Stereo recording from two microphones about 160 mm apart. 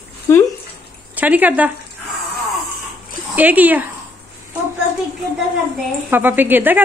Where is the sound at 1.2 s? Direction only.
10° right (ahead or behind).